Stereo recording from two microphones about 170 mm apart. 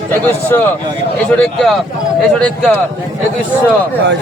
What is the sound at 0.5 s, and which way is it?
Speech, 15° left (ahead or behind).